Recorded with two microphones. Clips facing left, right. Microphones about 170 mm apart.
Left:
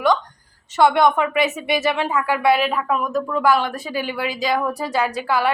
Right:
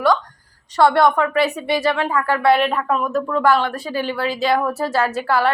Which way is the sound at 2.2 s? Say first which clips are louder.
Right 2 dB; 10° left (ahead or behind).